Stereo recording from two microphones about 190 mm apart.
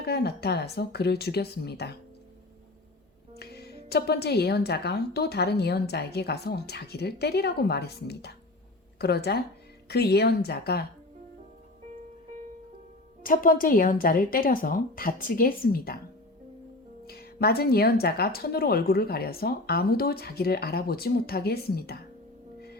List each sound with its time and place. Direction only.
0.0 s a woman's voice: 60° left (ahead or behind)
3.3 s a woman's voice: 60° left (ahead or behind)
13.2 s a woman's voice: 45° left (ahead or behind)
17.1 s a woman's voice: 55° left (ahead or behind)